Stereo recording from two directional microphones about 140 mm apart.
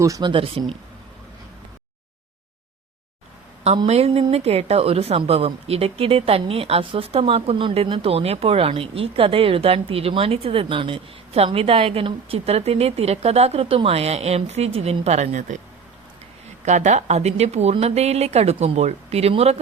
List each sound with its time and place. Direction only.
0.0 s speech: 30° right (ahead or behind)
3.8 s speech: 45° right (ahead or behind); by 15.5 s 60° right (ahead or behind)
16.6 s speech: 60° right (ahead or behind)